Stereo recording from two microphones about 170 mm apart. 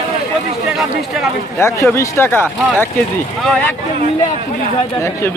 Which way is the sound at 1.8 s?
15° left (ahead or behind).